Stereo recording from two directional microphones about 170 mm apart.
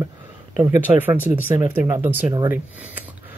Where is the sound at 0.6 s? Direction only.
15° right (ahead or behind).